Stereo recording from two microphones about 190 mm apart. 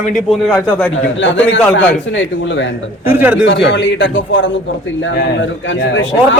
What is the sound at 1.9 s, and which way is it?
Speech, 75° left (ahead or behind).